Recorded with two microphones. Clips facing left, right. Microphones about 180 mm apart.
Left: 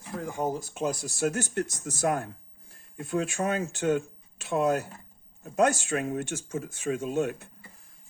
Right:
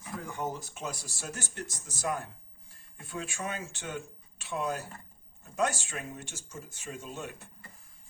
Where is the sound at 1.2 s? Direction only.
55° left (ahead or behind).